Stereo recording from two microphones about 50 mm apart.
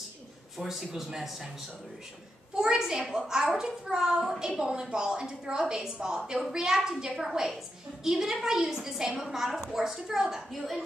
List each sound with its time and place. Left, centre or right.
0.6 s speech: centre
2.5 s a child's voice: centre